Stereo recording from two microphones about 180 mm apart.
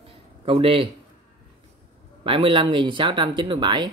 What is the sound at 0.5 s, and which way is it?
Speech, 30° right (ahead or behind).